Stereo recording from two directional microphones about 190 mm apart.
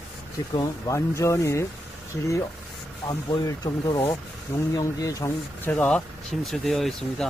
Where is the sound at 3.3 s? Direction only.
20° left (ahead or behind); by 7.3 s centre (ahead or behind).